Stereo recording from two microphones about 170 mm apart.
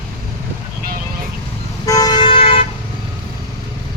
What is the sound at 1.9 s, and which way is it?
Toot, 20° left (ahead or behind).